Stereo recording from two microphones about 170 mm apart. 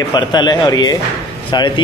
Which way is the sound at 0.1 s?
25° left (ahead or behind).